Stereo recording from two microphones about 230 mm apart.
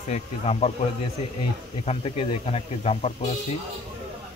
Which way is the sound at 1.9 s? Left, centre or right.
Left.